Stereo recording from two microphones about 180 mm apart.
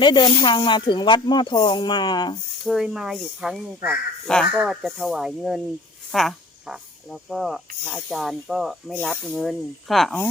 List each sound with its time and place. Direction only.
0.0 s speech: 25° left (ahead or behind)
2.6 s speech: centre (ahead or behind)